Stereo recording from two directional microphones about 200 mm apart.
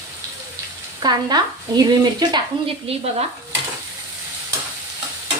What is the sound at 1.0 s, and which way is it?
Speech, 20° right (ahead or behind).